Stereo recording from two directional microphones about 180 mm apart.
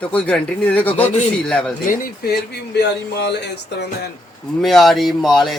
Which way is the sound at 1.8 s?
60° left (ahead or behind).